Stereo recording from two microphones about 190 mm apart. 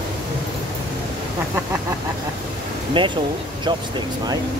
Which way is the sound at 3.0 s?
25° right (ahead or behind).